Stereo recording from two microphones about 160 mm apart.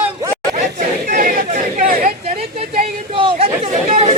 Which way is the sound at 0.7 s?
60° right (ahead or behind).